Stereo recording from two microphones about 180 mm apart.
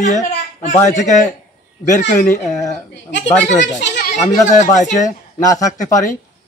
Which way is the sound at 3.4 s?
45° left (ahead or behind).